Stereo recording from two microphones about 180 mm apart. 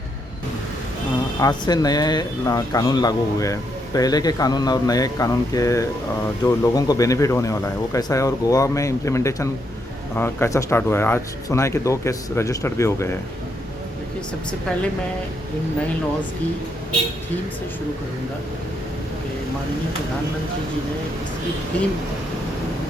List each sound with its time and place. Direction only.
1.4 s speech: 25° left (ahead or behind)
21.7 s speech: 5° left (ahead or behind)